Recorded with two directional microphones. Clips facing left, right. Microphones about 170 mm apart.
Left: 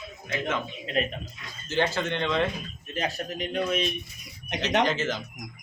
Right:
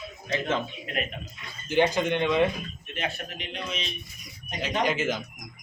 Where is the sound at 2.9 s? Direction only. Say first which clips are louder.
Left 3 dB; 40° left (ahead or behind).